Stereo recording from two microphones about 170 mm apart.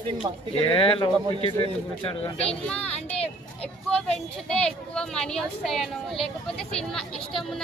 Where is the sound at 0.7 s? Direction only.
30° left (ahead or behind).